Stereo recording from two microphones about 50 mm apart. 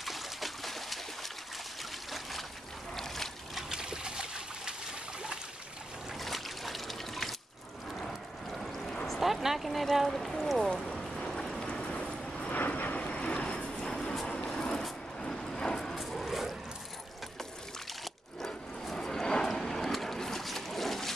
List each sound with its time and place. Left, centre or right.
0.0 s trickle: centre
3.0 s boat: centre
3.6 s trickle: centre
6.1 s trickle: centre
8.5 s vehicle: centre
9.0 s speech: centre
10.7 s boat: centre
12.4 s vehicle: left; by 15.9 s centre
15.9 s vehicle: centre
18.9 s boat: centre